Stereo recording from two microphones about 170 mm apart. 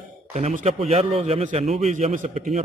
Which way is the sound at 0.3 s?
45° right (ahead or behind).